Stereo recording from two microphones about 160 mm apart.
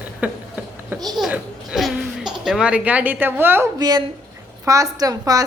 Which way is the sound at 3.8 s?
25° right (ahead or behind).